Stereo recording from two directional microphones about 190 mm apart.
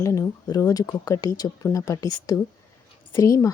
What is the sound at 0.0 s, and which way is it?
A woman's voice, 15° left (ahead or behind).